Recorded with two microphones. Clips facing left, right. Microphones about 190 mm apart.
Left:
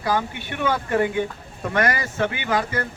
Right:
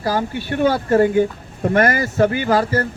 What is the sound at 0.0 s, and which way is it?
Speech, 35° right (ahead or behind).